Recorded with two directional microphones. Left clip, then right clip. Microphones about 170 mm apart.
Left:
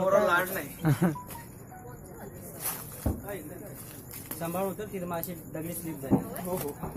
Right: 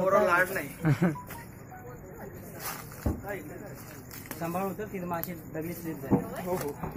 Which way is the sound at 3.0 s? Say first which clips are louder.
Even; 30° left (ahead or behind).